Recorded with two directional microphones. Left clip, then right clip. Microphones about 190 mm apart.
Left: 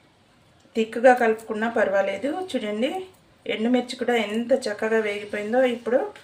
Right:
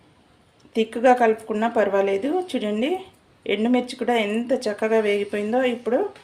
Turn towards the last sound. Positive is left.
turn(degrees=-30)  # may be behind; listen again after turning